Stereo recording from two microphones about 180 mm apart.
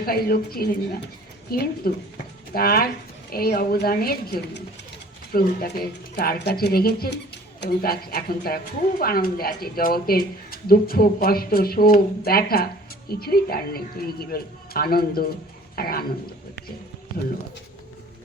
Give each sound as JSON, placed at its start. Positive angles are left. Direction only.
{"t": 0.0, "sound": "a woman's voice", "side_deg": 55}